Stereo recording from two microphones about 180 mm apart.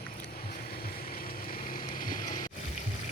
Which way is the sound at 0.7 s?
55° left (ahead or behind).